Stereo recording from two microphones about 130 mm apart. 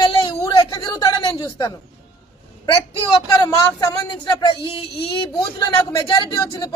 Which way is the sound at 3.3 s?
25° left (ahead or behind).